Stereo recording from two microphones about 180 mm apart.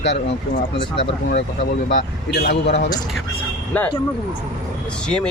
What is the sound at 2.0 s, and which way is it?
Speech, 65° left (ahead or behind).